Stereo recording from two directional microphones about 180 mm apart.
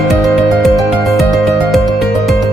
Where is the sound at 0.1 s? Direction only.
Centre (ahead or behind).